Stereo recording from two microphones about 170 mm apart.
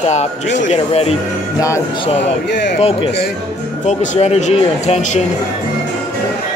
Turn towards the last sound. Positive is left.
turn(degrees=40)  # may be behind; listen again after turning